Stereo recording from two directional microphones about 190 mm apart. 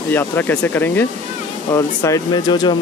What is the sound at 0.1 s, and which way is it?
Speech, 10° left (ahead or behind).